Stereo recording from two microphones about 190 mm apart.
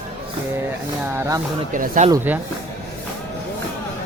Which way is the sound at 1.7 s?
45° right (ahead or behind).